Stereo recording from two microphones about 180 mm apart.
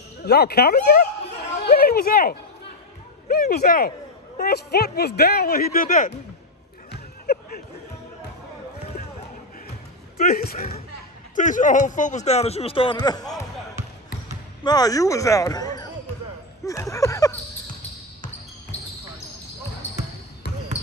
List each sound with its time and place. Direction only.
0.2 s speech: 65° left (ahead or behind); by 6.1 s 50° left (ahead or behind)
6.9 s a sound: 60° left (ahead or behind)
10.1 s speech: 55° left (ahead or behind)
11.3 s a man's voice: 45° left (ahead or behind); by 13.4 s 20° left (ahead or behind)
14.6 s speech: 20° left (ahead or behind)
16.6 s a sound: 15° left (ahead or behind)
18.7 s basketball bounce: 10° left (ahead or behind)
20.7 s basketball bounce: 20° left (ahead or behind)